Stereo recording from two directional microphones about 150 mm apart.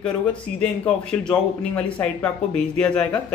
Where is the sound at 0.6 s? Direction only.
5° left (ahead or behind).